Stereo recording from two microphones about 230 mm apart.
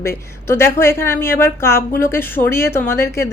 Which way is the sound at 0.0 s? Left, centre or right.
Centre.